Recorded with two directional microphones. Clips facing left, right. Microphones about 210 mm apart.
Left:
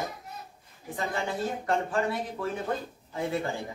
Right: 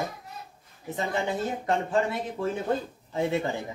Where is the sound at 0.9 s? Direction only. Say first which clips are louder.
Right 3 dB; 20° right (ahead or behind).